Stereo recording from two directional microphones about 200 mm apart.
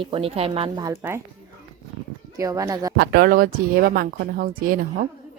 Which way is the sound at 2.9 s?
50° right (ahead or behind).